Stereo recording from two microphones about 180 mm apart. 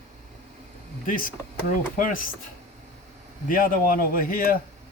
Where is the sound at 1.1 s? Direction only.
50° left (ahead or behind).